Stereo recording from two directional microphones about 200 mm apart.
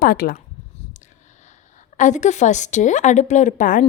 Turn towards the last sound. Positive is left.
turn(degrees=40)  # may be behind; listen again after turning